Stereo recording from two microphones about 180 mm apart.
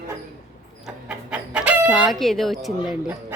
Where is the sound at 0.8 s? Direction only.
5° right (ahead or behind).